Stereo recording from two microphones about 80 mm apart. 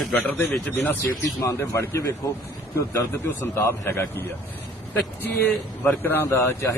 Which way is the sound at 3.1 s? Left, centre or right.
Left.